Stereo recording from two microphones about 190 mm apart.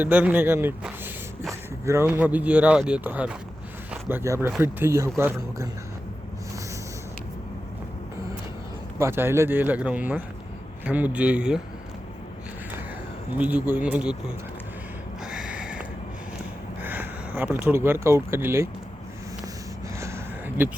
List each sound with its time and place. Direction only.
0.0 s speech: 10° right (ahead or behind)
9.0 s speech: 15° right (ahead or behind)
13.3 s speech: 10° right (ahead or behind)
15.2 s a sound: 5° right (ahead or behind)
17.7 s speech: 10° right (ahead or behind)
20.0 s a sound: 15° right (ahead or behind)